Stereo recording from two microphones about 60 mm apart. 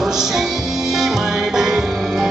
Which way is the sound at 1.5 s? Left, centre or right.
Centre.